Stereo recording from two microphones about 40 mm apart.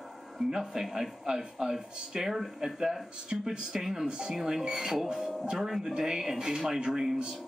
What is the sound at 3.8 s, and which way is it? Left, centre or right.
Speech, centre.